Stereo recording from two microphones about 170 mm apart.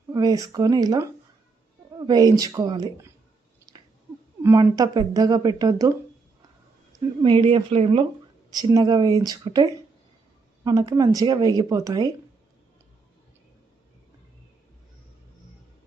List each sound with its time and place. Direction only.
0.1 s speech: 20° right (ahead or behind)
3.7 s chewing: 20° right (ahead or behind)
4.5 s speech: 25° right (ahead or behind)
7.2 s speech: 30° right (ahead or behind)
8.4 s speech: 25° right (ahead or behind)